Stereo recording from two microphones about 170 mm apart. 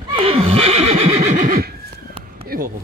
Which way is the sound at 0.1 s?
35° right (ahead or behind).